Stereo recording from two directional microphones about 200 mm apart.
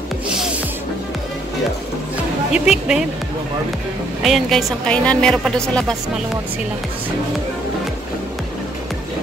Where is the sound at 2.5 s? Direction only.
5° right (ahead or behind).